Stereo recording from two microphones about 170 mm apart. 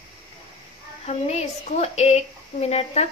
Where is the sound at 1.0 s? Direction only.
40° left (ahead or behind).